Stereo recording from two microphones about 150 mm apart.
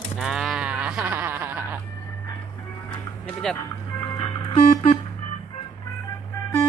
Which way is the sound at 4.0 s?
30° left (ahead or behind).